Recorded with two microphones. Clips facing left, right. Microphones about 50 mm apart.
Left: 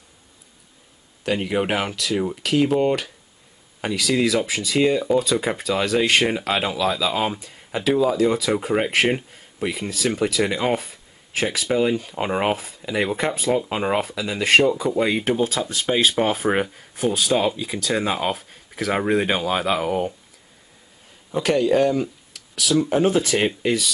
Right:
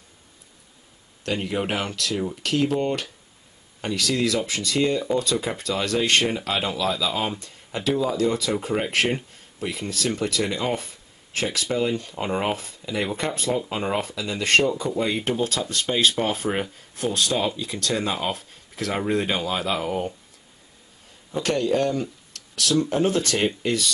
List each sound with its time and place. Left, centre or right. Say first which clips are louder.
1.2 s speech: left 4 dB; centre
12.5 s speech: left 4 dB; centre
13.7 s speech: left 4 dB; centre
14.0 s speech: left 3 dB; centre
21.3 s speech: left 4 dB; centre